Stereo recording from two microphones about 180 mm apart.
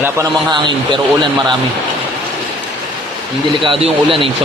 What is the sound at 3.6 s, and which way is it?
Speech, 30° right (ahead or behind).